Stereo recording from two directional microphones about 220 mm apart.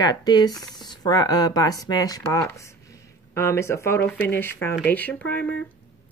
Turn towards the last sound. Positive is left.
turn(degrees=5)  # may be behind; listen again after turning